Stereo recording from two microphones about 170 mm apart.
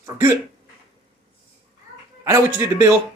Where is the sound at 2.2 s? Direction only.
15° right (ahead or behind).